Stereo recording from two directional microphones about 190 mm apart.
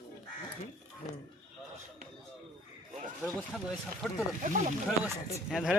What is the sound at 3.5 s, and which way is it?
Speech, centre (ahead or behind).